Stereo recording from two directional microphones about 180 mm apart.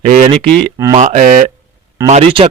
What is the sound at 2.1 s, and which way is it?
Speech, 35° right (ahead or behind).